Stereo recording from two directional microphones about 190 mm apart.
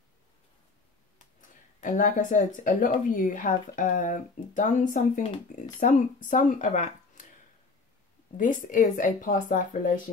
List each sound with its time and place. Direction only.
1.1 s speech: 40° left (ahead or behind)
8.4 s speech: 45° left (ahead or behind)